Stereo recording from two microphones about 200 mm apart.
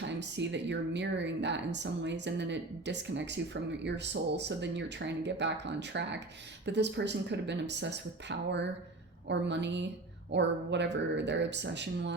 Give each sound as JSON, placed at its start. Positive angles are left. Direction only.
{"t": 0.0, "sound": "speech", "side_deg": -60}